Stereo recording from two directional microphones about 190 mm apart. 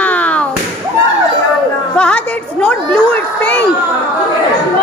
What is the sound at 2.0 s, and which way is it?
Speech, 5° left (ahead or behind).